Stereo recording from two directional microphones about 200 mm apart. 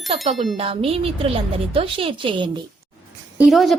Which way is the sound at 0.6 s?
30° right (ahead or behind).